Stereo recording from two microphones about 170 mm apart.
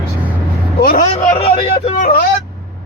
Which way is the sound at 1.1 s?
35° left (ahead or behind).